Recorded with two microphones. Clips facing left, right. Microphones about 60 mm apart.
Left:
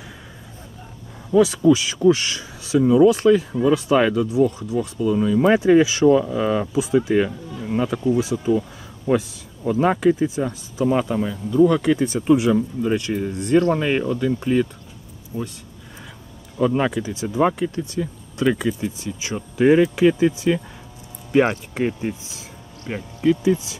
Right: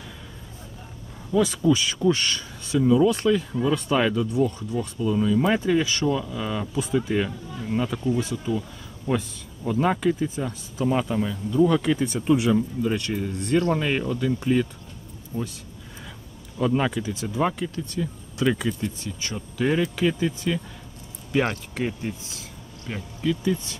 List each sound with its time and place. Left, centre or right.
1.3 s speech: centre
16.5 s speech: centre
19.3 s speech: left